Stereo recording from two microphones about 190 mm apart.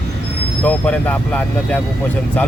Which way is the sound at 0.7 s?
5° left (ahead or behind).